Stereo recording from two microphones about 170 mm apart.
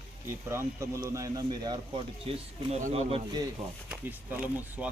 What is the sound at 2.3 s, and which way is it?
Speech, 35° right (ahead or behind).